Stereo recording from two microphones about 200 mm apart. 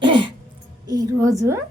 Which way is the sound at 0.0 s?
25° right (ahead or behind).